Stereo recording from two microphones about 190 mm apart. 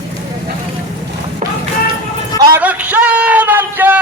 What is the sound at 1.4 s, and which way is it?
Music, 40° right (ahead or behind).